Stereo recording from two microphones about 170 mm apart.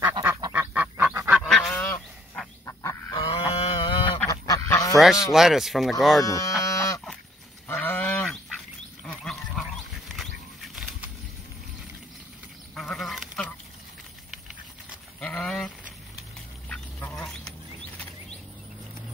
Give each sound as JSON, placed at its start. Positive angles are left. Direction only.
{"t": 0.2, "sound": "duck", "side_deg": -15}
{"t": 1.4, "sound": "goose", "side_deg": 0}
{"t": 3.2, "sound": "a sound", "side_deg": 30}
{"t": 4.3, "sound": "duck", "side_deg": 20}
{"t": 4.9, "sound": "speech", "side_deg": 0}
{"t": 6.2, "sound": "speech", "side_deg": 20}
{"t": 6.6, "sound": "a sound", "side_deg": 20}
{"t": 7.6, "sound": "livestock", "side_deg": 10}
{"t": 10.8, "sound": "bird flight", "side_deg": -5}
{"t": 12.7, "sound": "goat", "side_deg": 0}
{"t": 15.1, "sound": "livestock", "side_deg": 5}
{"t": 16.6, "sound": "duck", "side_deg": 5}